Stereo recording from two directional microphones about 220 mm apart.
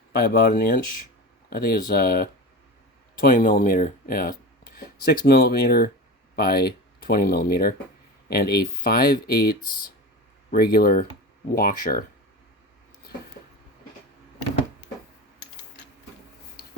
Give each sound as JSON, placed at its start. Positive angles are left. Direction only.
{"t": 0.1, "sound": "speech", "side_deg": 45}